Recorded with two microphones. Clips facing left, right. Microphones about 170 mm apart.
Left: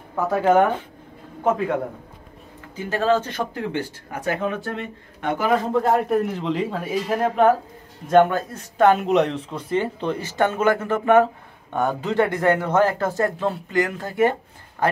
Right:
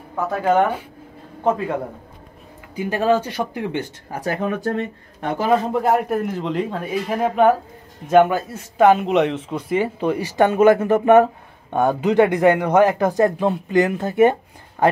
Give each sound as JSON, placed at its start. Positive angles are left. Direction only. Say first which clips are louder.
{"t": 0.5, "sound": "a man's voice", "louder": "even", "side_deg": -10}
{"t": 2.7, "sound": "a man's voice", "louder": "right 2 dB", "side_deg": -15}
{"t": 4.1, "sound": "speech", "louder": "right 2 dB", "side_deg": -35}
{"t": 5.5, "sound": "a man's voice", "louder": "right 2 dB", "side_deg": -15}